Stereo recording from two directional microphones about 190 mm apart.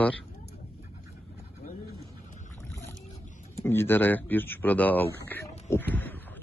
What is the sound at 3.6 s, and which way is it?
Speech, 10° left (ahead or behind).